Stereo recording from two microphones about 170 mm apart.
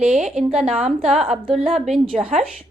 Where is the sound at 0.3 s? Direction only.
5° right (ahead or behind).